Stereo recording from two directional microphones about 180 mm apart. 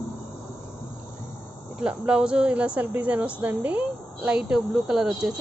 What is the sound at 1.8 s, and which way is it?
A woman's voice, 5° right (ahead or behind).